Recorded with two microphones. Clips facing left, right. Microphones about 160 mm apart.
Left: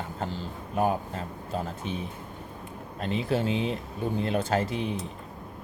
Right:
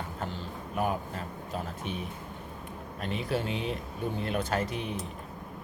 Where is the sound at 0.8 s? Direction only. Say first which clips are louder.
Left 4 dB; 30° left (ahead or behind).